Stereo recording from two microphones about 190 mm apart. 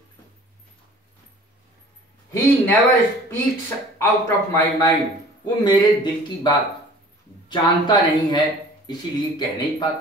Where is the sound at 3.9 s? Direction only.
15° left (ahead or behind).